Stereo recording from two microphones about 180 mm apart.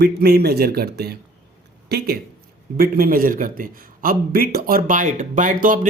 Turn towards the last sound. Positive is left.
turn(degrees=-45)  # may be behind; listen again after turning